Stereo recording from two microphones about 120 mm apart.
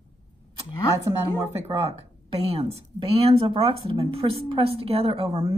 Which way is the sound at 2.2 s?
55° right (ahead or behind).